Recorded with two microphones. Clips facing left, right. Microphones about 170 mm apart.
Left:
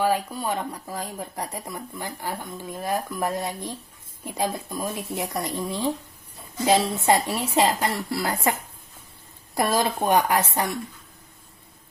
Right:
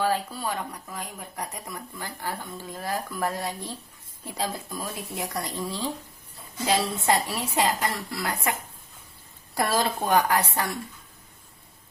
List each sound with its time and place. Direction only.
0.0 s speech: 15° left (ahead or behind)
9.6 s speech: 20° left (ahead or behind)